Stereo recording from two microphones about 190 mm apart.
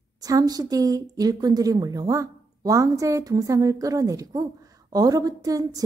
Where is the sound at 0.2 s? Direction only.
20° right (ahead or behind).